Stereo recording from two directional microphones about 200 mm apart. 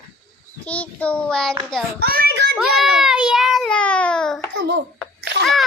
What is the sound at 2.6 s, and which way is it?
Child singing, centre (ahead or behind).